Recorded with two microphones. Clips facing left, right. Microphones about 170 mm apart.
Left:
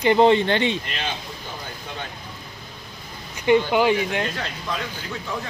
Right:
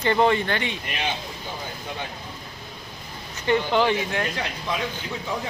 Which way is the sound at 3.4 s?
15° left (ahead or behind).